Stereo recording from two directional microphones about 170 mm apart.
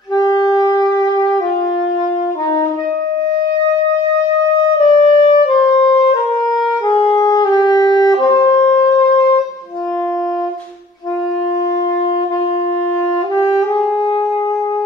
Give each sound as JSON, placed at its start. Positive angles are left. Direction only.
{"t": 0.2, "sound": "wind instrument", "side_deg": 25}
{"t": 4.8, "sound": "music", "side_deg": 25}
{"t": 6.9, "sound": "music", "side_deg": 25}
{"t": 8.8, "sound": "shofar", "side_deg": 25}